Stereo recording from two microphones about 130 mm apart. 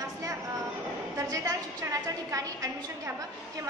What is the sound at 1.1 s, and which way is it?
A woman's voice, 25° right (ahead or behind).